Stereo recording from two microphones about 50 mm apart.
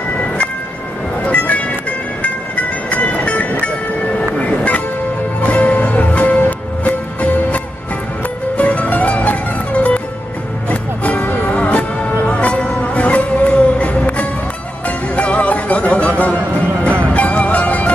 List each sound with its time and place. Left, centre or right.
1.2 s music: left
2.2 s train: left
4.4 s music: left